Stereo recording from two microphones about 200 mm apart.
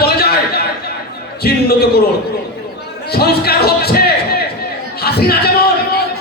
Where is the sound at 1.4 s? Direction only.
55° left (ahead or behind).